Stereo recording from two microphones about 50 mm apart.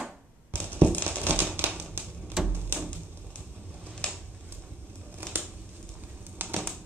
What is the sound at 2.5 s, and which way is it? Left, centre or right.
Door, right.